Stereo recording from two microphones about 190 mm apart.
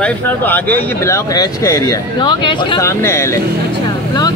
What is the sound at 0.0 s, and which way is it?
Speech, 10° left (ahead or behind).